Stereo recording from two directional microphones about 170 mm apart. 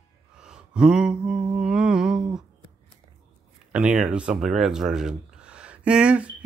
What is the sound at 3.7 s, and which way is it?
Speech, 5° right (ahead or behind).